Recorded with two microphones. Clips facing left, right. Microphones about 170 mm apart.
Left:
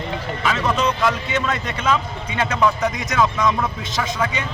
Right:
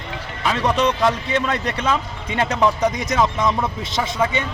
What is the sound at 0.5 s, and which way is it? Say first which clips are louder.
A man's voice: right 3 dB; 35° right (ahead or behind).